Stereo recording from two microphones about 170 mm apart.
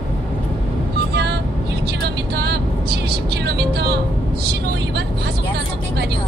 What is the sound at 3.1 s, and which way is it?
Vehicle, 75° right (ahead or behind).